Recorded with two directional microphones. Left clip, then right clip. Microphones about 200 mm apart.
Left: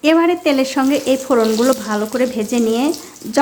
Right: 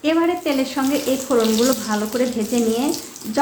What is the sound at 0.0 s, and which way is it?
Speech, 35° left (ahead or behind).